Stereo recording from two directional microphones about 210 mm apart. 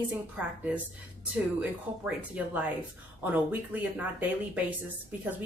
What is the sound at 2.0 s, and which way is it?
A woman's voice, 5° right (ahead or behind).